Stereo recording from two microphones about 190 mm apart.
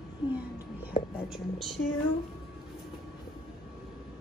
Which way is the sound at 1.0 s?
30° left (ahead or behind).